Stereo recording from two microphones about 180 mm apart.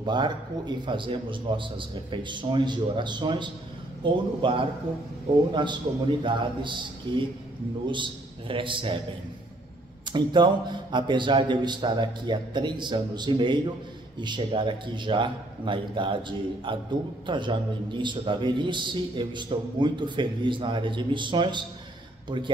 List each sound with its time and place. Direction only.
0.0 s a man's voice: 25° right (ahead or behind)
10.1 s a man's voice: 25° right (ahead or behind)